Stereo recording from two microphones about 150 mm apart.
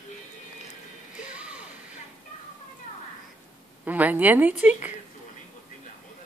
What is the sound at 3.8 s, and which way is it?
Speech, 10° right (ahead or behind).